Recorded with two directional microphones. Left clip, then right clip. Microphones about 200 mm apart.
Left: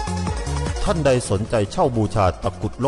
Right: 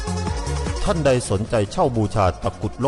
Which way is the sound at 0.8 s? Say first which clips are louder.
Even; centre (ahead or behind).